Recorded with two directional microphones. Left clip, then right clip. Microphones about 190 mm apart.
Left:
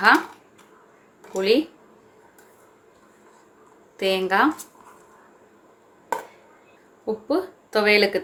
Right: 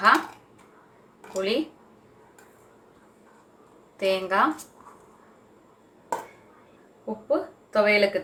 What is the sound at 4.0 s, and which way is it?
Speech, 40° left (ahead or behind).